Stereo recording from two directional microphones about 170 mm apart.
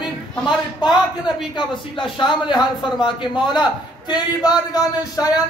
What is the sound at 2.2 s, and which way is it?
A man's voice, 25° left (ahead or behind).